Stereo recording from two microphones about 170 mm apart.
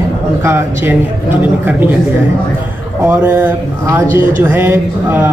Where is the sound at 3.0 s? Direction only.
10° right (ahead or behind).